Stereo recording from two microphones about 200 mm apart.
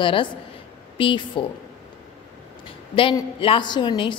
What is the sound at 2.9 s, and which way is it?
A woman's voice, 25° left (ahead or behind).